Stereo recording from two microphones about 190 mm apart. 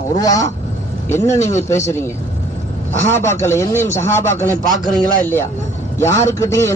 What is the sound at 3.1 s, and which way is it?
A man's voice, 15° left (ahead or behind).